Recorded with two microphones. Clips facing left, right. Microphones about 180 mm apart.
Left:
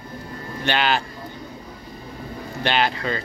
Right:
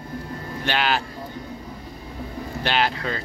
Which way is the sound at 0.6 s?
5° right (ahead or behind).